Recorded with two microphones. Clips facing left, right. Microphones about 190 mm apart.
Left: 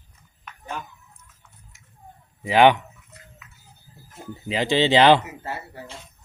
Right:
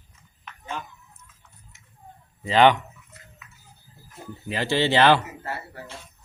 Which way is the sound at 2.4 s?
15° left (ahead or behind).